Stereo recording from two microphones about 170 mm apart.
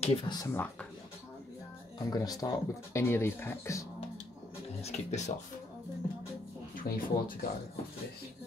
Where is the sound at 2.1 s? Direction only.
20° left (ahead or behind).